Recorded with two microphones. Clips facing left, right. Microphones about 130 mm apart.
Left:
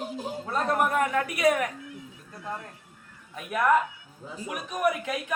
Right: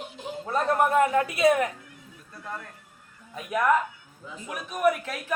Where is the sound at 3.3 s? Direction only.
5° right (ahead or behind).